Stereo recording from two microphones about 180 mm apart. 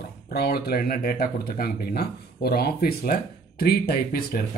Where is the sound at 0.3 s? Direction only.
60° left (ahead or behind).